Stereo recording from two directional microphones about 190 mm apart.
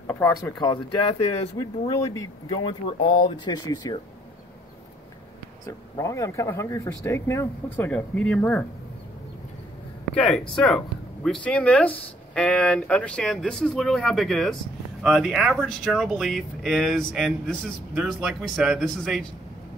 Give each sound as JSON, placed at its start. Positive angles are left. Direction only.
{"t": 0.0, "sound": "speech", "side_deg": 10}
{"t": 5.7, "sound": "speech", "side_deg": 15}
{"t": 10.5, "sound": "speech", "side_deg": 0}